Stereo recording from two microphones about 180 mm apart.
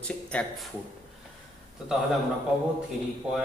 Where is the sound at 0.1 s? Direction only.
5° left (ahead or behind).